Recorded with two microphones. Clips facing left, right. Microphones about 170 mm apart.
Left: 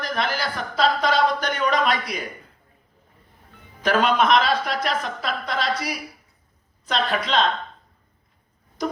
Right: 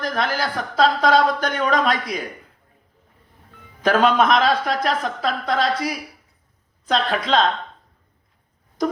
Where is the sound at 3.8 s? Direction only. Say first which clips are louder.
Right 3 dB; 45° right (ahead or behind).